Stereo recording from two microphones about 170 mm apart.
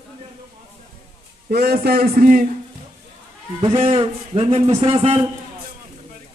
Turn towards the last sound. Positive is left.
turn(degrees=-35)  # may be behind; listen again after turning